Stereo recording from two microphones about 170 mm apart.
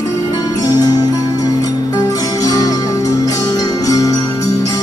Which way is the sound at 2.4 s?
20° left (ahead or behind).